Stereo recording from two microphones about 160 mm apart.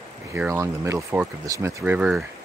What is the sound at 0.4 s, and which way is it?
Speech, 15° right (ahead or behind).